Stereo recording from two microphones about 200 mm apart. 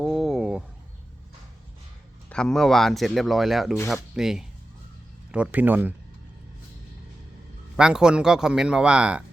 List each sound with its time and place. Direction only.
0.0 s a sound: centre (ahead or behind)
2.3 s speech: 5° left (ahead or behind)
7.8 s speech: 5° right (ahead or behind)